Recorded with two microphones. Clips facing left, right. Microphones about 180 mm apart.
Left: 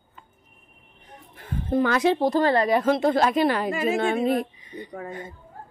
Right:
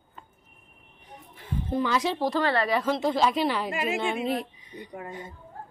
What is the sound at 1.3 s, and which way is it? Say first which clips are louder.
A woman's voice: left 5 dB; 55° left (ahead or behind).